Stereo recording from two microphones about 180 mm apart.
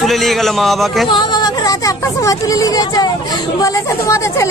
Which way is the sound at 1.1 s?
25° left (ahead or behind).